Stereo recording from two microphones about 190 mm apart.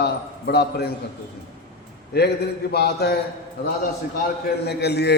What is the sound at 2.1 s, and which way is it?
A man's voice, 60° left (ahead or behind).